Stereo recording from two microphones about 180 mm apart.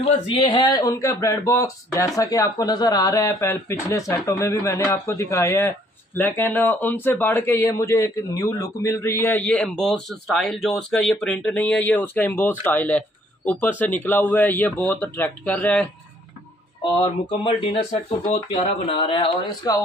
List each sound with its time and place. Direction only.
0.4 s speech: 25° left (ahead or behind); by 15.9 s 10° left (ahead or behind)
17.0 s speech: 30° left (ahead or behind)